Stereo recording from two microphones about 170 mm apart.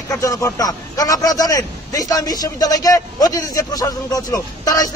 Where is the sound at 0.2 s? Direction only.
20° left (ahead or behind).